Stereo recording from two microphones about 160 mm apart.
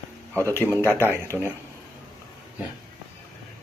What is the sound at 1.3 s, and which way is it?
Speech, 5° right (ahead or behind).